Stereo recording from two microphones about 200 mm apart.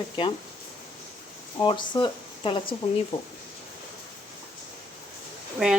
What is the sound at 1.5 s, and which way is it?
Speech, 25° left (ahead or behind).